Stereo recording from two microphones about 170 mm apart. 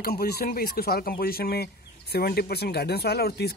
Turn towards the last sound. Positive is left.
turn(degrees=70)  # may be behind; listen again after turning